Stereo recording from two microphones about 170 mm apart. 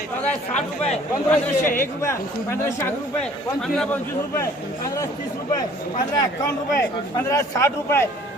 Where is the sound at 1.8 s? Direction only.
15° left (ahead or behind).